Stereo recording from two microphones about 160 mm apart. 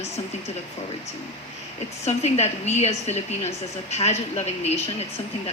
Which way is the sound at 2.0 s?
40° left (ahead or behind).